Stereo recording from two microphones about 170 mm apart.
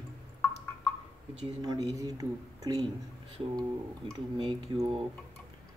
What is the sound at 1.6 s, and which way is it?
Speech, 20° right (ahead or behind).